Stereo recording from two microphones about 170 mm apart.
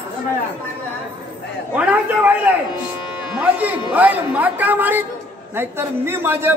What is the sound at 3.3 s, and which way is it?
A man's voice, 10° right (ahead or behind).